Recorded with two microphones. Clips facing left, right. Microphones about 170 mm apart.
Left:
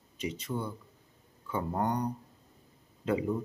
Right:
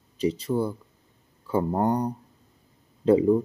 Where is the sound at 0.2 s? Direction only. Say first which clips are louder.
Right 10 dB; 35° right (ahead or behind).